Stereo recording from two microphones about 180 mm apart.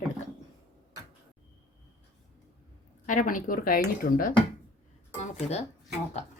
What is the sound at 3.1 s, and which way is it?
A woman's voice, 45° left (ahead or behind).